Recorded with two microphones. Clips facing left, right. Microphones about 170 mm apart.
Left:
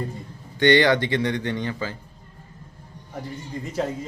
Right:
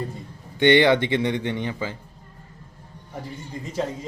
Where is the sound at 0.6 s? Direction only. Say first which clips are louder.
Right 1 dB; 20° right (ahead or behind).